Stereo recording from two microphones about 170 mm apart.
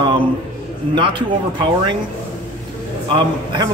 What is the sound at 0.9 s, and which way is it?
Speech, 30° right (ahead or behind).